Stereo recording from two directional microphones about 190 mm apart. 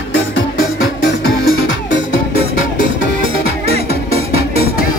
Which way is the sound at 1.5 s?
25° right (ahead or behind).